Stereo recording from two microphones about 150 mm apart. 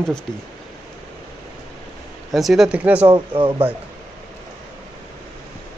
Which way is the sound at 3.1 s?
35° right (ahead or behind).